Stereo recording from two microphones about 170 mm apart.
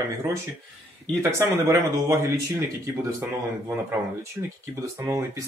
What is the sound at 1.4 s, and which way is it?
Speech, 15° right (ahead or behind).